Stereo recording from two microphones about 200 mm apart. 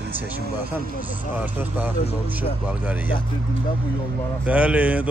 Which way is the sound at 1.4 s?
10° right (ahead or behind).